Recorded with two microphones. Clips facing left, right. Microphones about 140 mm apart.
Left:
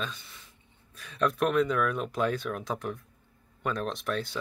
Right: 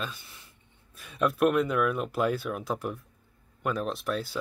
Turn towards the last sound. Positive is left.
turn(degrees=-5)  # may be behind; listen again after turning